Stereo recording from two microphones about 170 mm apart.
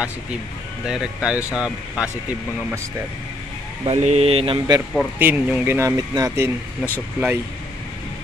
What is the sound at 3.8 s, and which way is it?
Mantra, 40° right (ahead or behind).